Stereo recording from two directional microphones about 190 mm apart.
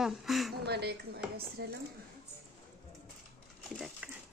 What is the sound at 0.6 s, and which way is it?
Speech, 60° right (ahead or behind).